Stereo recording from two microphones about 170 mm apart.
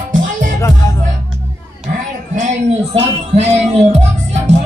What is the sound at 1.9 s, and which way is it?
Music, 50° right (ahead or behind).